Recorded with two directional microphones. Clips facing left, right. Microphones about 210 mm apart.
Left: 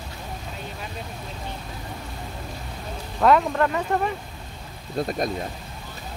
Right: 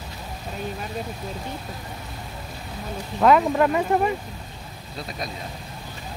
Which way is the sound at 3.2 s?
5° right (ahead or behind).